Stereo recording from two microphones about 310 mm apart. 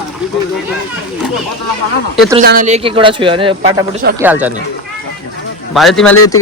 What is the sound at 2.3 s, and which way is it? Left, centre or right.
A man's voice, right.